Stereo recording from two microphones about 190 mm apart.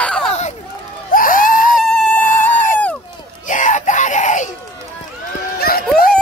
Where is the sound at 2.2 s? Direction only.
40° left (ahead or behind).